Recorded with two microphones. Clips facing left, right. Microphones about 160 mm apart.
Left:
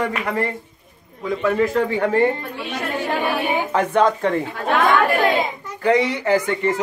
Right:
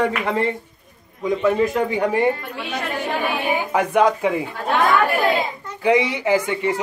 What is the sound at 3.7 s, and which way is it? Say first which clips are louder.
Speech: right 1 dB; 10° right (ahead or behind).